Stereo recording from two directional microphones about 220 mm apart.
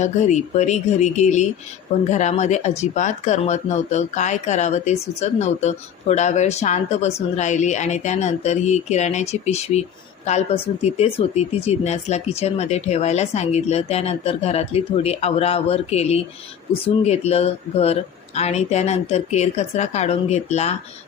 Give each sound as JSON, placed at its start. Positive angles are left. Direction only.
{"t": 0.0, "sound": "speech", "side_deg": 30}